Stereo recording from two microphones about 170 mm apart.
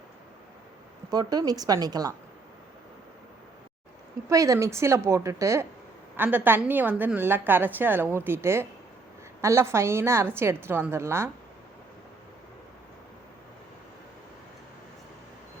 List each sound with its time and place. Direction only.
1.1 s speech: 25° right (ahead or behind)
4.3 s a woman's voice: 20° right (ahead or behind)